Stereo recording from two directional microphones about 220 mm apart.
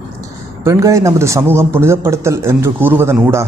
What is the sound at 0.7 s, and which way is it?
A man's voice, 15° right (ahead or behind).